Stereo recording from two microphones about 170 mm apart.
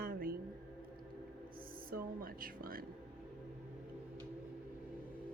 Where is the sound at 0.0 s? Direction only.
60° right (ahead or behind).